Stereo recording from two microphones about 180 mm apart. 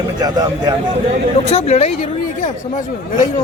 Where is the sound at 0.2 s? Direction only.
20° right (ahead or behind).